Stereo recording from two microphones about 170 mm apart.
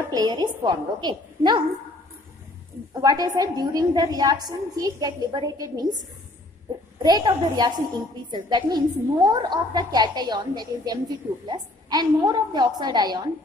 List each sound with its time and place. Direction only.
0.1 s a woman's voice: 25° right (ahead or behind)
2.9 s a woman's voice: 20° right (ahead or behind)
7.0 s a woman's voice: 25° right (ahead or behind)